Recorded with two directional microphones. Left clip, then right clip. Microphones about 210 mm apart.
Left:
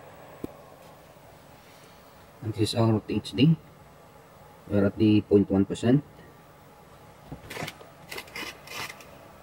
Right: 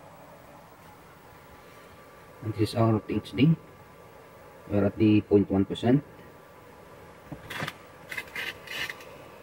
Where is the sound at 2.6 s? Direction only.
15° left (ahead or behind).